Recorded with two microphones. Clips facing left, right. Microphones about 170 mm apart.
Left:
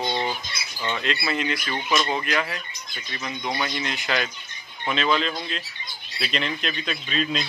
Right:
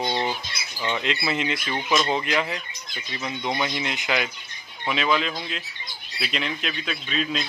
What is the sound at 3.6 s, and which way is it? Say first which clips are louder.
Speech: right 1 dB; 20° right (ahead or behind).